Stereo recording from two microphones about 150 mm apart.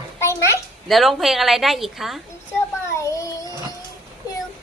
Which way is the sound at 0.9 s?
Centre (ahead or behind).